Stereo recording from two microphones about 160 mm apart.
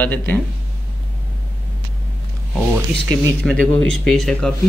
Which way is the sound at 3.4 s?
5° left (ahead or behind).